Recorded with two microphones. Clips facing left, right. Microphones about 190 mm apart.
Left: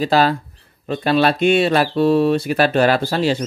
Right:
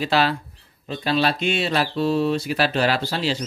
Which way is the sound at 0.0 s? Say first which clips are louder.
Left 5 dB; 45° left (ahead or behind).